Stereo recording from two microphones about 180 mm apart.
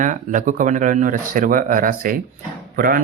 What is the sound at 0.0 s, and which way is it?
Speech, 45° right (ahead or behind).